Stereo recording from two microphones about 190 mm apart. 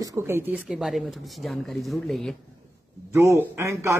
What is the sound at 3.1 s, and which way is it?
Speech, 15° right (ahead or behind).